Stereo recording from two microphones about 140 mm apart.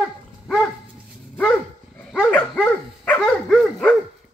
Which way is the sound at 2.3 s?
10° left (ahead or behind).